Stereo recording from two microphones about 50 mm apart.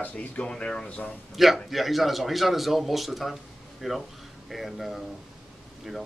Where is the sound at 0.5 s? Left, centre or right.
Centre.